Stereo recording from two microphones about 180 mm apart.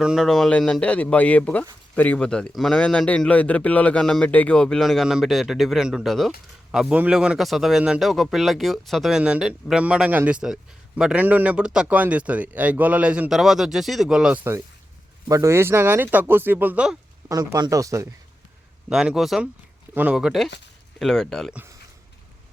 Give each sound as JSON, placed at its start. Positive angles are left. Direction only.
{"t": 0.0, "sound": "speech", "side_deg": -5}
{"t": 17.2, "sound": "speech", "side_deg": -20}
{"t": 18.9, "sound": "speech", "side_deg": -5}